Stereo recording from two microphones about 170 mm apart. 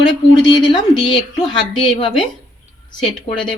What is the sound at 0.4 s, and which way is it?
Speech, 25° left (ahead or behind).